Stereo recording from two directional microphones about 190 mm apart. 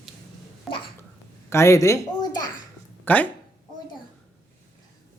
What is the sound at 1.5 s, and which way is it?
Speech, 15° left (ahead or behind).